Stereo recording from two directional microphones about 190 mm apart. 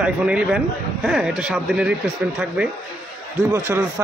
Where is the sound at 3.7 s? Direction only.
15° right (ahead or behind).